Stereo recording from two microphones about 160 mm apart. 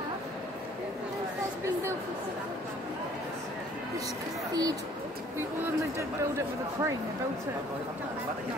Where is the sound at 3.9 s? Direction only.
25° right (ahead or behind).